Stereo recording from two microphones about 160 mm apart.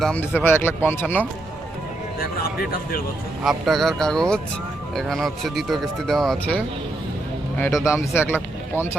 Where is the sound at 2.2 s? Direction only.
65° left (ahead or behind).